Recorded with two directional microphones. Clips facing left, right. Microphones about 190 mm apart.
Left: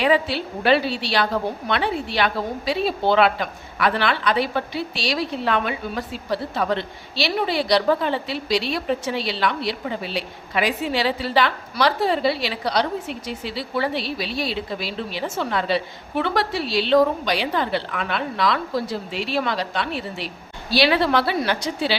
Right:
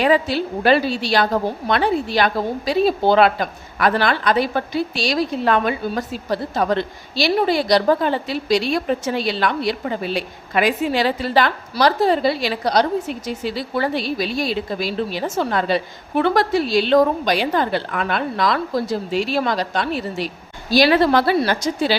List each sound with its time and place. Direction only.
0.0 s a woman's voice: 40° right (ahead or behind)